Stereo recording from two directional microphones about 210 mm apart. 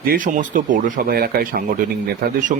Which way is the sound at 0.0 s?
40° right (ahead or behind).